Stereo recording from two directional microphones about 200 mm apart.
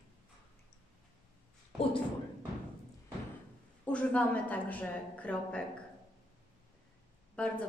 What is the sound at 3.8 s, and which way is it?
A woman's voice, 5° left (ahead or behind).